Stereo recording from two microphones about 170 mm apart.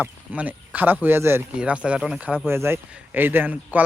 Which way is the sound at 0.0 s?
10° right (ahead or behind).